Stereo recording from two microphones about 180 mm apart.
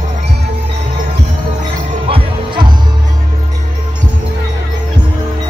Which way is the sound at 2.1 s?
25° right (ahead or behind).